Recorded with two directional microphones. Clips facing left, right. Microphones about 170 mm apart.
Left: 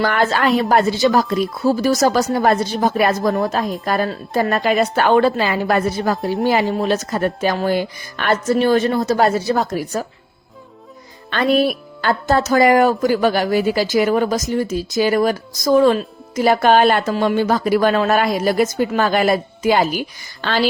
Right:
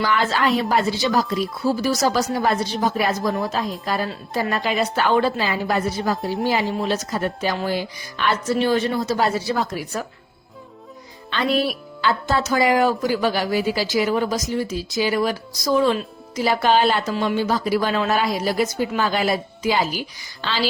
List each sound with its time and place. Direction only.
0.0 s speech: 55° left (ahead or behind)
3.8 s a woman's voice: 55° left (ahead or behind); by 10.1 s 40° left (ahead or behind)
11.3 s speech: 50° left (ahead or behind)